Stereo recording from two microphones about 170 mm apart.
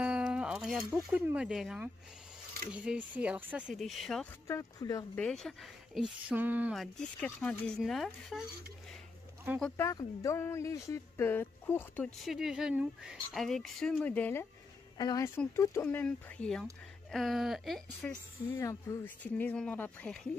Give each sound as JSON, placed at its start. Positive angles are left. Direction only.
{"t": 0.0, "sound": "music", "side_deg": -5}
{"t": 0.9, "sound": "speech", "side_deg": -10}
{"t": 2.7, "sound": "a sound", "side_deg": -5}
{"t": 3.2, "sound": "speech", "side_deg": -10}
{"t": 4.5, "sound": "speech", "side_deg": 20}
{"t": 5.1, "sound": "speech", "side_deg": 5}
{"t": 6.2, "sound": "a sound", "side_deg": -10}
{"t": 7.2, "sound": "speech", "side_deg": 10}
{"t": 9.8, "sound": "speech", "side_deg": 20}
{"t": 15.0, "sound": "speech", "side_deg": 20}
{"t": 18.6, "sound": "speech", "side_deg": 20}